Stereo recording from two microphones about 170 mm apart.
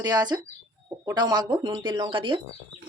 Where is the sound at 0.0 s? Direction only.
25° right (ahead or behind).